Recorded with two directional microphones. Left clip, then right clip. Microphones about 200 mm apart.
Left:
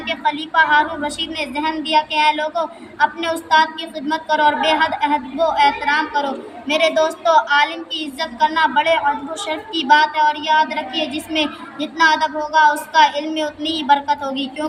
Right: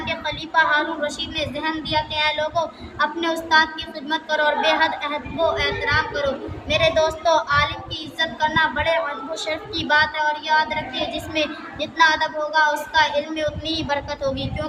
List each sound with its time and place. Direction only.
0.3 s a woman's voice: 30° right (ahead or behind)
2.3 s a sound: 25° left (ahead or behind)
3.0 s a woman's voice: 35° right (ahead or behind)